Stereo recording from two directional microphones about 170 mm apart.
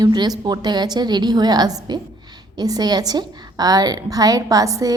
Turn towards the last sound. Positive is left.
turn(degrees=-20)  # may be behind; listen again after turning